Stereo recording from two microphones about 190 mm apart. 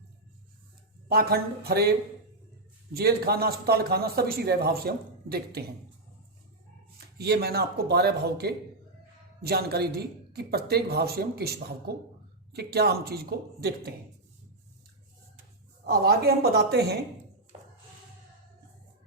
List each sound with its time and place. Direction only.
1.0 s a man's voice: 55° right (ahead or behind)
2.9 s a man's voice: 55° right (ahead or behind)
7.2 s a man's voice: 60° right (ahead or behind)
15.9 s a man's voice: 55° right (ahead or behind)